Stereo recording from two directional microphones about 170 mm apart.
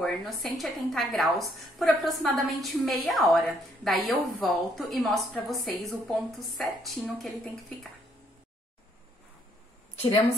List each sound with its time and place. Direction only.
0.0 s a woman's voice: centre (ahead or behind)